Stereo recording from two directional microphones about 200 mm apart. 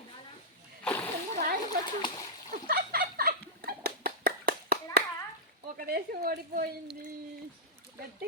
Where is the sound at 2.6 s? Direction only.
50° right (ahead or behind).